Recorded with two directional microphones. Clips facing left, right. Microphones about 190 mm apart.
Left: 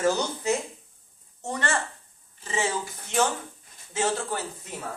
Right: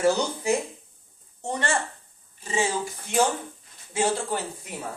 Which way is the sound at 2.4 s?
15° right (ahead or behind).